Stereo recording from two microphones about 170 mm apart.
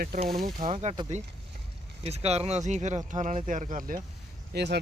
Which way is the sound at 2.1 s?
40° right (ahead or behind).